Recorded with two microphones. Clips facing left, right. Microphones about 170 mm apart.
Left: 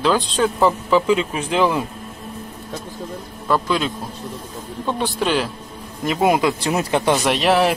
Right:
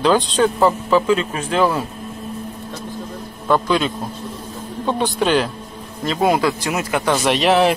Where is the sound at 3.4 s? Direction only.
Centre (ahead or behind).